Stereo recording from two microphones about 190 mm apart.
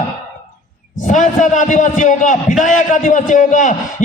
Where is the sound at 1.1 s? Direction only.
40° left (ahead or behind).